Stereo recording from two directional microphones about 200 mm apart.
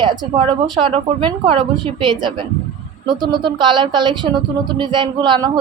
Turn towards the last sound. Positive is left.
turn(degrees=-20)  # may be behind; listen again after turning